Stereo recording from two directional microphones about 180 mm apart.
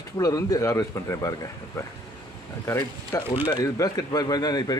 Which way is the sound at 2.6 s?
15° left (ahead or behind).